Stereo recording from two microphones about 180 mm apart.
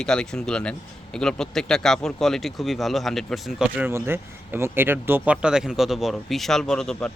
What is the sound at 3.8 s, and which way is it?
Speech, 15° right (ahead or behind).